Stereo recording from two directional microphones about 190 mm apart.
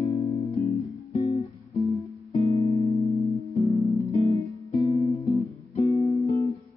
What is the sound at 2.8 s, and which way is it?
Music, 35° left (ahead or behind).